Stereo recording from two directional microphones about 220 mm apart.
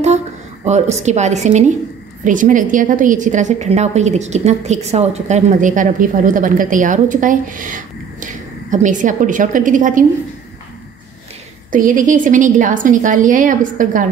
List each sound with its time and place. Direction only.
1.0 s a woman's voice: 30° right (ahead or behind)
11.7 s a woman's voice: 35° right (ahead or behind)